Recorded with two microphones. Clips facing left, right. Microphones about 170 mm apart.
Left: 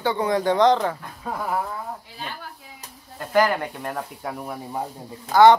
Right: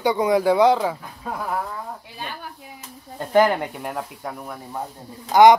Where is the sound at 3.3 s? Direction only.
20° right (ahead or behind).